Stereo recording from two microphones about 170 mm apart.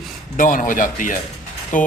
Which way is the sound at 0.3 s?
55° left (ahead or behind).